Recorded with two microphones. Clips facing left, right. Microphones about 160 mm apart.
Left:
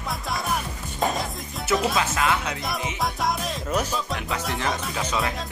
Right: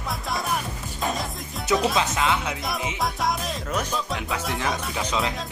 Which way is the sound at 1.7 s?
Centre (ahead or behind).